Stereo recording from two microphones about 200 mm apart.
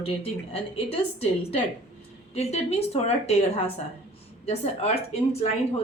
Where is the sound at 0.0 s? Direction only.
30° left (ahead or behind).